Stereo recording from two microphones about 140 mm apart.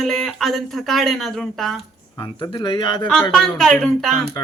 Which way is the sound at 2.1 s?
35° left (ahead or behind).